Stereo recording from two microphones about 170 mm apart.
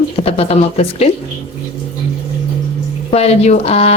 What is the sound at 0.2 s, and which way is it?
Speech, 35° left (ahead or behind).